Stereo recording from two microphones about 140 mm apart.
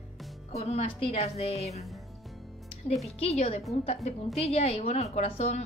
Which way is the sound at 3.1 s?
50° left (ahead or behind).